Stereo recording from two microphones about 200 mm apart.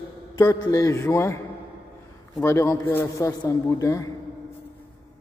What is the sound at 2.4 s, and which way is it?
A man's voice, 15° left (ahead or behind).